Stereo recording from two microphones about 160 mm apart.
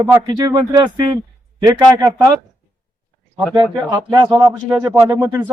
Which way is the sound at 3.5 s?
30° right (ahead or behind).